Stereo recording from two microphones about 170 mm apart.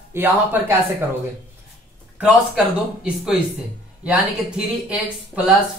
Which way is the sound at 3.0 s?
5° right (ahead or behind).